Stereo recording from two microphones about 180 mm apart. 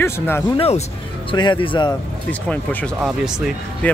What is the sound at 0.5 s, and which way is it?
Speech, 30° left (ahead or behind).